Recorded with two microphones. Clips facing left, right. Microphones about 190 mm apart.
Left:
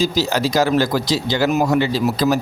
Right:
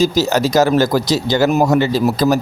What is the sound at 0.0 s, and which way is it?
Speech, 45° right (ahead or behind).